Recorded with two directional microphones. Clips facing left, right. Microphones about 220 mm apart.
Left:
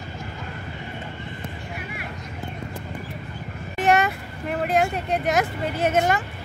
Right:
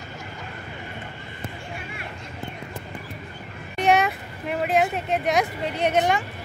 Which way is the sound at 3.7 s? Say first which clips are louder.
Even; centre (ahead or behind).